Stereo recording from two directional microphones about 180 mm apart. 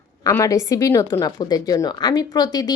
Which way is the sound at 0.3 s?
15° left (ahead or behind).